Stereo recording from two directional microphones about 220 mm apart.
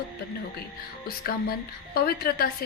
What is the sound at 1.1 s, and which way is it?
A woman's voice, 45° left (ahead or behind).